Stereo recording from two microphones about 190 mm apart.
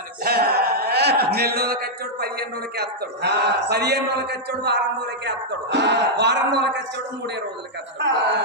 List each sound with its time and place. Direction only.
0.3 s a man's voice: 55° right (ahead or behind)
7.9 s speech: 65° right (ahead or behind)